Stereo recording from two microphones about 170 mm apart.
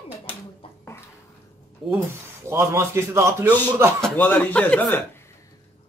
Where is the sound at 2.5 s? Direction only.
15° right (ahead or behind).